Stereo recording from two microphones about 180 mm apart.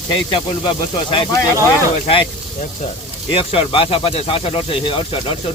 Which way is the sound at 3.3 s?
30° left (ahead or behind).